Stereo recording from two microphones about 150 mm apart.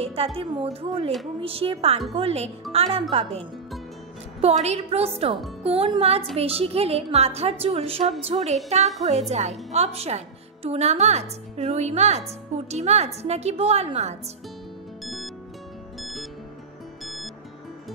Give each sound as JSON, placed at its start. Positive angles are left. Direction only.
{"t": 0.0, "sound": "a woman's voice", "side_deg": -40}
{"t": 15.0, "sound": "music", "side_deg": 0}